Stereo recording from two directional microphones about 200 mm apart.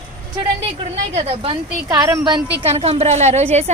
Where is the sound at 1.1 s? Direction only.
30° right (ahead or behind).